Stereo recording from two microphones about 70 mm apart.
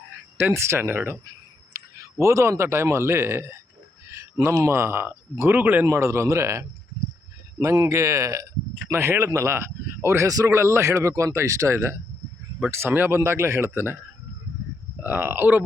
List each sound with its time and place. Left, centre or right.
0.3 s a man's voice: right
1.7 s a sound: right
2.1 s a man's voice: right
5.8 s speech: right
8.9 s a man's voice: right
10.2 s a man's voice: right
10.5 s a man's voice: right
15.0 s speech: right